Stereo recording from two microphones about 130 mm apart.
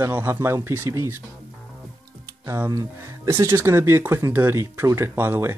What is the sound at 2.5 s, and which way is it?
Speech, 25° right (ahead or behind).